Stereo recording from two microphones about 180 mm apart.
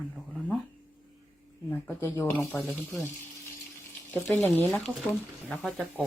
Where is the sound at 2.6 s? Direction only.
Centre (ahead or behind).